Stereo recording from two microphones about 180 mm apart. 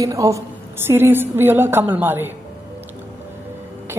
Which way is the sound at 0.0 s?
15° right (ahead or behind).